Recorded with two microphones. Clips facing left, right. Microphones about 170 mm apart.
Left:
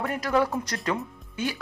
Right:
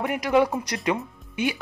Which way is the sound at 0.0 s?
15° right (ahead or behind).